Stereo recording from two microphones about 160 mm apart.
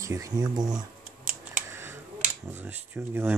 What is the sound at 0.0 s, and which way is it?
Speech, 20° right (ahead or behind).